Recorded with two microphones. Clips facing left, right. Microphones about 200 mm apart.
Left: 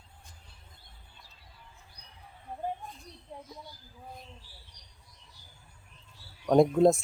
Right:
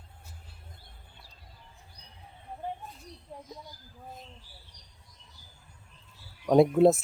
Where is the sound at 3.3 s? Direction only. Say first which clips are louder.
Even; 10° left (ahead or behind).